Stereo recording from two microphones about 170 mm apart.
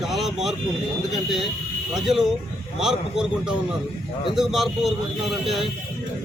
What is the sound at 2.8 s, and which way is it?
A man's voice, 5° right (ahead or behind).